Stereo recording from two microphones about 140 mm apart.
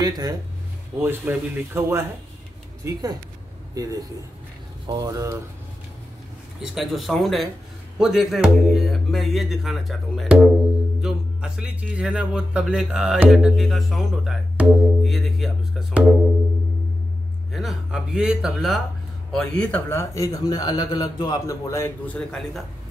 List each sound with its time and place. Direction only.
1.0 s speech: 15° right (ahead or behind)
6.6 s speech: centre (ahead or behind)
17.5 s speech: centre (ahead or behind)
19.3 s a man's voice: 10° left (ahead or behind)